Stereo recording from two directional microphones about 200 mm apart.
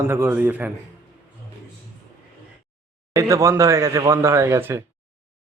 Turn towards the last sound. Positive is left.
turn(degrees=-10)  # may be behind; listen again after turning